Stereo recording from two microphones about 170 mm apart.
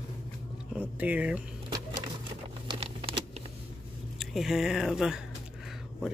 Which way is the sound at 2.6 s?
35° right (ahead or behind).